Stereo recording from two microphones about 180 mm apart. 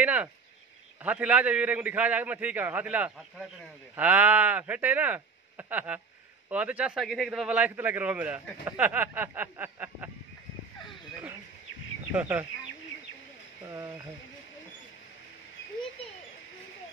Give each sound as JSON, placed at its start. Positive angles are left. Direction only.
{"t": 0.0, "sound": "a man's voice", "side_deg": -10}
{"t": 12.1, "sound": "a man's voice", "side_deg": -10}
{"t": 13.7, "sound": "speech", "side_deg": -20}